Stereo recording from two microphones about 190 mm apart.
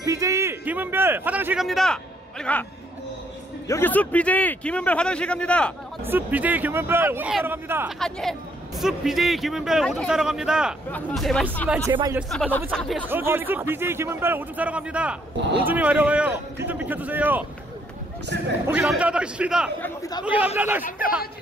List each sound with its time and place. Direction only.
0.0 s a man's voice: 15° right (ahead or behind); by 2.6 s 5° left (ahead or behind)
3.6 s a man's voice: 10° left (ahead or behind)
6.0 s speech: 10° right (ahead or behind)
8.0 s speech: centre (ahead or behind)
11.9 s speech: 20° right (ahead or behind)
12.2 s speech: centre (ahead or behind)
13.1 s speech: 10° right (ahead or behind)
18.3 s speech: 65° right (ahead or behind)
18.7 s speech: 5° right (ahead or behind)
19.8 s a man's voice: 20° left (ahead or behind)
20.2 s speech: 5° right (ahead or behind)